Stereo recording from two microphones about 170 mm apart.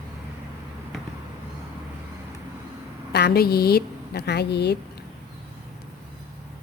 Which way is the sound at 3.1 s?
70° left (ahead or behind).